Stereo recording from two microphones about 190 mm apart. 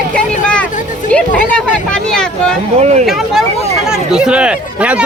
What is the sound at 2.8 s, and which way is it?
Speech, 35° right (ahead or behind).